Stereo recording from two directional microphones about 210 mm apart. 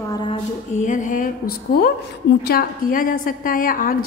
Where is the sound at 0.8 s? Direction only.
40° left (ahead or behind).